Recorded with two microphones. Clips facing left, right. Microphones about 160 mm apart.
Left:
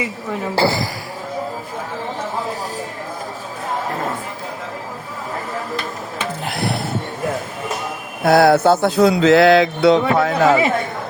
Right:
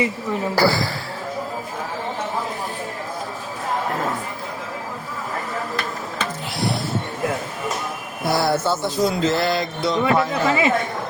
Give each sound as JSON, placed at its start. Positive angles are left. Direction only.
{"t": 0.5, "sound": "a woman's voice", "side_deg": 20}
{"t": 6.4, "sound": "music", "side_deg": 55}
{"t": 8.2, "sound": "a sound", "side_deg": 60}